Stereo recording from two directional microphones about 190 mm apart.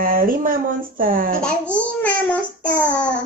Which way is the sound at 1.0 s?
50° right (ahead or behind).